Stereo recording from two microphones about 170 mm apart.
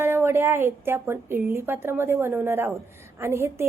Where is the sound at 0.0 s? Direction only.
15° right (ahead or behind).